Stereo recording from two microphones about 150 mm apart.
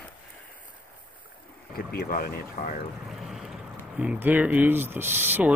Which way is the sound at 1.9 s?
75° left (ahead or behind).